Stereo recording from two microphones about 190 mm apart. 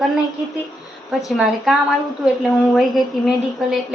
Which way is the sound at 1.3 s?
Centre (ahead or behind).